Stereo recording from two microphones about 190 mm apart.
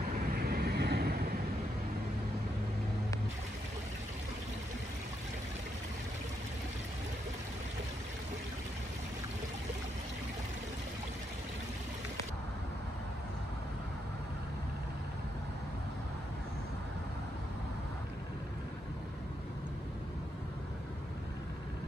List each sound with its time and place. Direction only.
0.4 s vehicle: 55° right (ahead or behind)